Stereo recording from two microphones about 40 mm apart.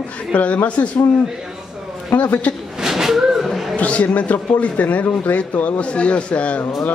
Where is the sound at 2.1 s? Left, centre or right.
Left.